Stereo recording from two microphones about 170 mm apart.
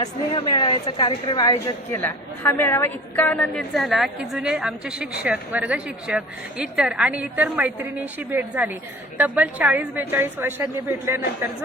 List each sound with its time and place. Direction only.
0.3 s a woman's voice: 30° left (ahead or behind); by 11.2 s 15° right (ahead or behind)